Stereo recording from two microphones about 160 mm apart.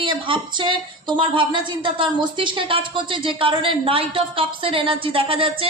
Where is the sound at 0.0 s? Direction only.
30° right (ahead or behind).